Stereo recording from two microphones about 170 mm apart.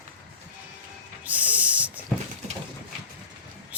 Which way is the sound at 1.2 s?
10° right (ahead or behind).